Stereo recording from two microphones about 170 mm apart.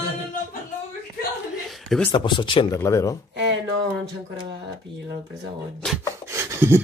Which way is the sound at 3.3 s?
90° right.